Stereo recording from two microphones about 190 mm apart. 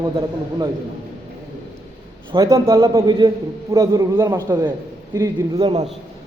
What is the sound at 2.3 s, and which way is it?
A man's voice, 20° right (ahead or behind).